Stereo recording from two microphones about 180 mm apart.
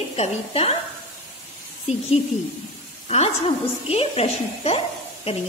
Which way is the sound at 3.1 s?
35° left (ahead or behind).